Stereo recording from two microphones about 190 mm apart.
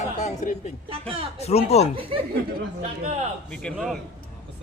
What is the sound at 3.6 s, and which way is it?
Speech, centre (ahead or behind).